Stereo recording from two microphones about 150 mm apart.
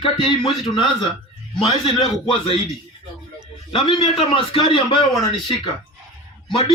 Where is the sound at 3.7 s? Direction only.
40° left (ahead or behind).